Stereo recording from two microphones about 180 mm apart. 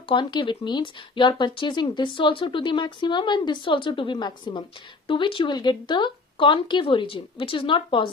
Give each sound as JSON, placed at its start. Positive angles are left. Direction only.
{"t": 0.1, "sound": "speech", "side_deg": 25}